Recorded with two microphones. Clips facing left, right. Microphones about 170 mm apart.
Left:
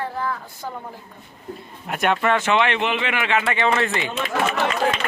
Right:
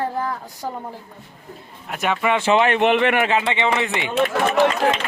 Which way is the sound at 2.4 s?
35° right (ahead or behind).